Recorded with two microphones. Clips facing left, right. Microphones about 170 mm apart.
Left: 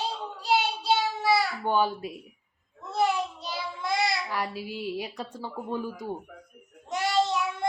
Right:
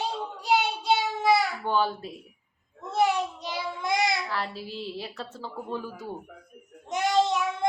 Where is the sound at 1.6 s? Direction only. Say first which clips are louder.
Left 1 dB; 15° left (ahead or behind).